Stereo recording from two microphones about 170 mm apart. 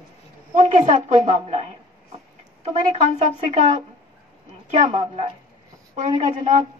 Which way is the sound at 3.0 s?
45° right (ahead or behind).